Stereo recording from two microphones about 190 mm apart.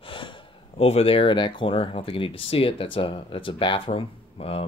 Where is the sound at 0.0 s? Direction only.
25° left (ahead or behind).